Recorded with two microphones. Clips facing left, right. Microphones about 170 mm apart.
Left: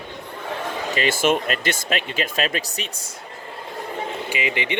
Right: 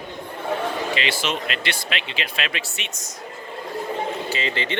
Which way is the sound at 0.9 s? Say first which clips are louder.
Left 5 dB; 45° left (ahead or behind).